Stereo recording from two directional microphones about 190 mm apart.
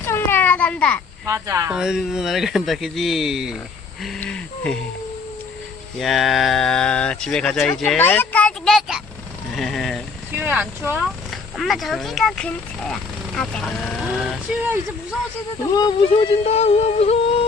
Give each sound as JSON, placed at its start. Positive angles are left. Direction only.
{"t": 0.0, "sound": "a sound", "side_deg": 10}
{"t": 1.2, "sound": "speech", "side_deg": -15}
{"t": 1.7, "sound": "speech", "side_deg": -5}
{"t": 6.0, "sound": "speech", "side_deg": 0}
{"t": 10.4, "sound": "speech", "side_deg": -10}
{"t": 15.7, "sound": "music", "side_deg": 20}